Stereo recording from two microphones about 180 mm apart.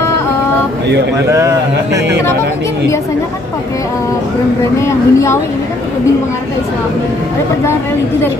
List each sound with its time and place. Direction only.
1.3 s speech: 20° right (ahead or behind)
4.8 s speech: 15° left (ahead or behind)